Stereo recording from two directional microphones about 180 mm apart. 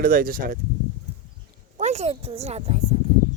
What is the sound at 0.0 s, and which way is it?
Speech, 55° right (ahead or behind).